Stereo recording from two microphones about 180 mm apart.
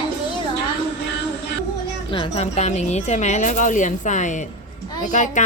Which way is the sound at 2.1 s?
30° left (ahead or behind).